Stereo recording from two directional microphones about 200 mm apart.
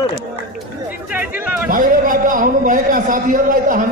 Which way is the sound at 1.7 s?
45° right (ahead or behind).